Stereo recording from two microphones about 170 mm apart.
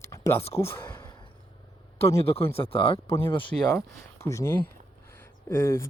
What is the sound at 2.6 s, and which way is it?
Speech, 35° left (ahead or behind).